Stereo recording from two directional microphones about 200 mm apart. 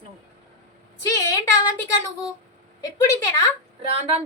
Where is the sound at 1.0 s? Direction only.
15° left (ahead or behind).